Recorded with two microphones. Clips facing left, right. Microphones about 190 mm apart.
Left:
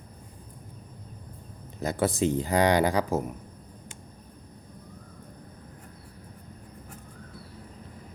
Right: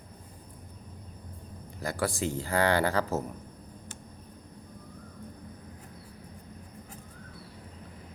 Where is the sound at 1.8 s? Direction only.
20° left (ahead or behind).